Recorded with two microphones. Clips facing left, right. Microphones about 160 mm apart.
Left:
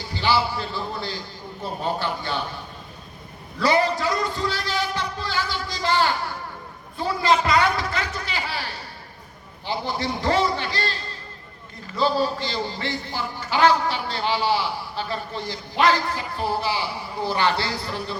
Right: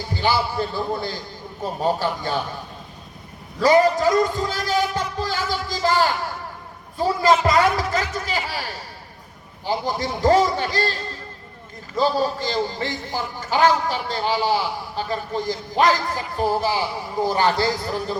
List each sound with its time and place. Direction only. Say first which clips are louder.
0.1 s a man's voice: even; 50° right (ahead or behind)
3.6 s a man's voice: right 5 dB; 45° right (ahead or behind)
9.6 s a man's voice: right 3 dB; 45° right (ahead or behind)
11.9 s a man's voice: right 2 dB; 45° right (ahead or behind)